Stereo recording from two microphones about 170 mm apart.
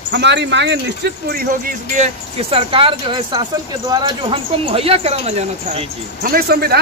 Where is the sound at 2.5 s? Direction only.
30° right (ahead or behind).